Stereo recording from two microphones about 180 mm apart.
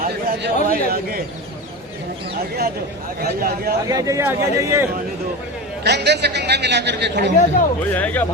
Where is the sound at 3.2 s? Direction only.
60° right (ahead or behind).